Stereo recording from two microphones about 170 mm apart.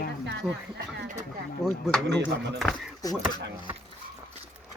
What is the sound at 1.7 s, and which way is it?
Speech, centre (ahead or behind).